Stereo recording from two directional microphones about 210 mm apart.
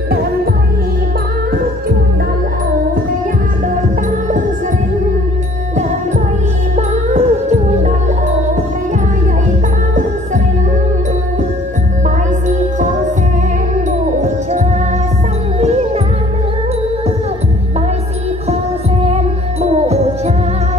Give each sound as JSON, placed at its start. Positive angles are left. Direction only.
{"t": 6.9, "sound": "music", "side_deg": -35}
{"t": 12.4, "sound": "music", "side_deg": -35}
{"t": 15.6, "sound": "music", "side_deg": -30}
{"t": 19.1, "sound": "music", "side_deg": -30}